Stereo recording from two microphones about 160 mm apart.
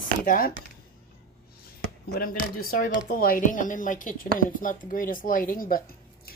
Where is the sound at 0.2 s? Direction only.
60° left (ahead or behind).